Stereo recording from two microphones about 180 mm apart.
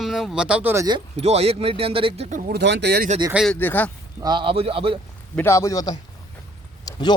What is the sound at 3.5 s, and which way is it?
Speech, 10° left (ahead or behind).